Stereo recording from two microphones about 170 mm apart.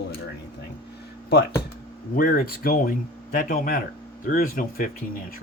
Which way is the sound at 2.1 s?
60° left (ahead or behind).